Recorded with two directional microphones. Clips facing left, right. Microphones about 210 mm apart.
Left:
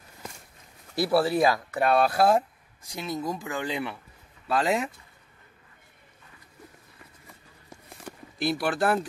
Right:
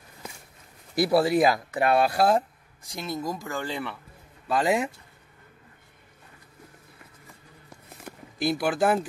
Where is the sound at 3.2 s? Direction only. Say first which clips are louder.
Even; 10° right (ahead or behind).